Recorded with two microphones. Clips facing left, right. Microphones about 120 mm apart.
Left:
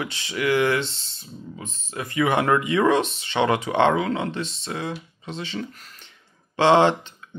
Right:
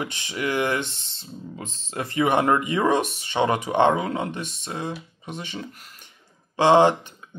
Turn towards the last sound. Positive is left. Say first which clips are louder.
# even
turn(degrees=-15)  # may be behind; listen again after turning